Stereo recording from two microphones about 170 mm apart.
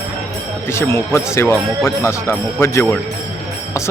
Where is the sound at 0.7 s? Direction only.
15° left (ahead or behind).